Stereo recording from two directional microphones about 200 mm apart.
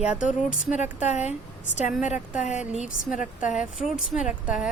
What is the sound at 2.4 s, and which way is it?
Speech, 35° left (ahead or behind).